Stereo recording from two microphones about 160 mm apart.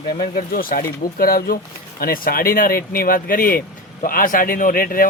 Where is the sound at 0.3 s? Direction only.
65° left (ahead or behind).